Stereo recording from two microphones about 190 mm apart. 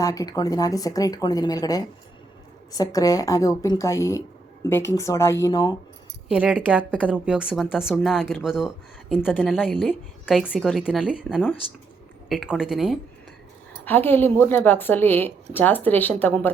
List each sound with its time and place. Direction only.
0.0 s a woman's voice: 20° left (ahead or behind)
6.2 s a woman's voice: 5° right (ahead or behind)
13.8 s a woman's voice: 10° left (ahead or behind)